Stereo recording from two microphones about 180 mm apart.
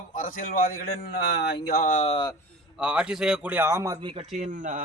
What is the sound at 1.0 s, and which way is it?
Speech, 65° left (ahead or behind).